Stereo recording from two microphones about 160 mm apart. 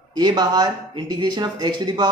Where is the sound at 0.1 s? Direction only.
25° right (ahead or behind).